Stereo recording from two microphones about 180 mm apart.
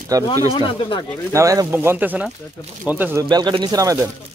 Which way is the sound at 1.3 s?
15° right (ahead or behind).